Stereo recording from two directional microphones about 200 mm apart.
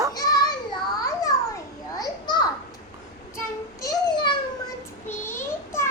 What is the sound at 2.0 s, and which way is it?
Children playing, 20° left (ahead or behind).